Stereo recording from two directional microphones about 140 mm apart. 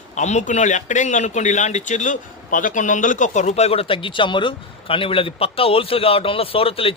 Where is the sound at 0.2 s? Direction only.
60° left (ahead or behind).